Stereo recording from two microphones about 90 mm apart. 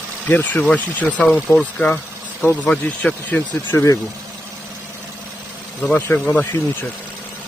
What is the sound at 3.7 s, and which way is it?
Speech, 35° left (ahead or behind).